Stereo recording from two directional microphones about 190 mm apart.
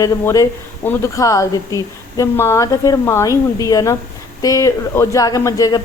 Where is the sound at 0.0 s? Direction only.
15° left (ahead or behind).